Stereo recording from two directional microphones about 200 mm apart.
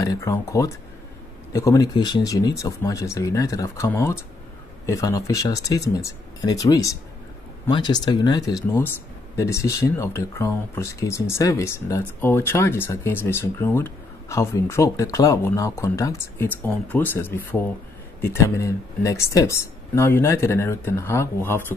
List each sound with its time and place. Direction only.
0.0 s speech: 15° left (ahead or behind)